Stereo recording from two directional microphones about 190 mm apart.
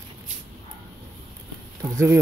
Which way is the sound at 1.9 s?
10° right (ahead or behind).